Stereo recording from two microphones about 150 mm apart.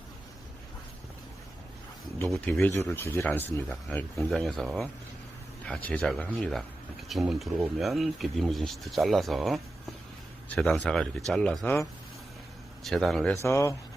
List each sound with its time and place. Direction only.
2.3 s speech: 10° left (ahead or behind)
12.8 s speech: centre (ahead or behind)
13.3 s speech: 20° left (ahead or behind)